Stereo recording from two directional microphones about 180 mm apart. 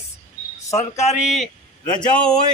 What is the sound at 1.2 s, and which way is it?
Speech, centre (ahead or behind).